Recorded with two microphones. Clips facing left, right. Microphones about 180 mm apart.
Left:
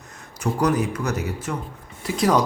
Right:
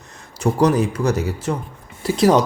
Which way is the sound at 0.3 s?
30° right (ahead or behind).